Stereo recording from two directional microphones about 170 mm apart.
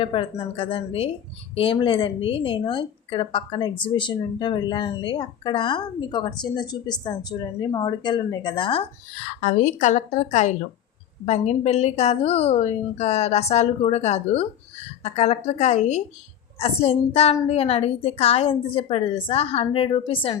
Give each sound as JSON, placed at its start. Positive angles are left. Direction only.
{"t": 0.0, "sound": "a woman's voice", "side_deg": 30}
{"t": 9.4, "sound": "a woman's voice", "side_deg": 45}